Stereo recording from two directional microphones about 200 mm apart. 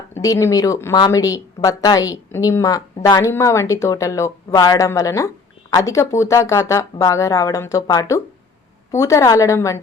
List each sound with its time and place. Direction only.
0.1 s speech: 15° left (ahead or behind)